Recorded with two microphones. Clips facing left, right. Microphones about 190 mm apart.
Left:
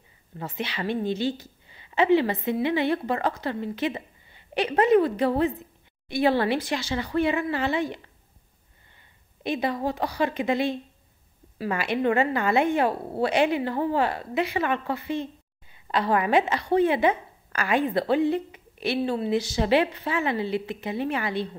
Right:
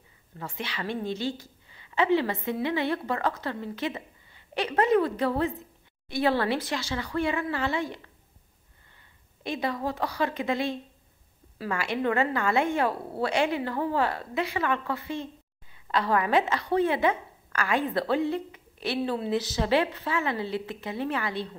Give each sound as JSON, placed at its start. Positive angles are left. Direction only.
{"t": 0.4, "sound": "speech", "side_deg": 20}
{"t": 1.2, "sound": "a sound", "side_deg": 20}
{"t": 2.1, "sound": "a woman's voice", "side_deg": 20}
{"t": 9.4, "sound": "a woman's voice", "side_deg": 20}